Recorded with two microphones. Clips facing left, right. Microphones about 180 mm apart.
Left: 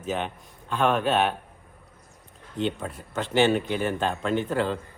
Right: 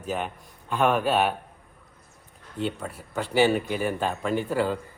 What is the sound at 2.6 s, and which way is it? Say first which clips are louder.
A man's voice: left 2 dB; 5° right (ahead or behind).